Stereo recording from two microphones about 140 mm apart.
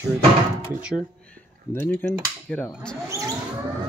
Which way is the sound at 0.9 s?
10° left (ahead or behind).